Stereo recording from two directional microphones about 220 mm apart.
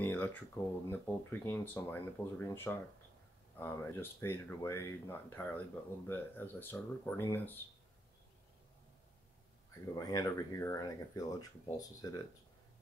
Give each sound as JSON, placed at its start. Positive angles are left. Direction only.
{"t": 0.0, "sound": "speech", "side_deg": 5}
{"t": 9.9, "sound": "speech", "side_deg": 15}